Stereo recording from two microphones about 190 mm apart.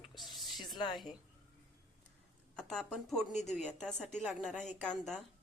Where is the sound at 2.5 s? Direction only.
5° left (ahead or behind).